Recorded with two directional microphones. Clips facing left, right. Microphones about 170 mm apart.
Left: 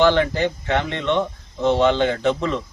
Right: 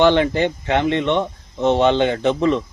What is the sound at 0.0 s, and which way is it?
Speech, 20° right (ahead or behind).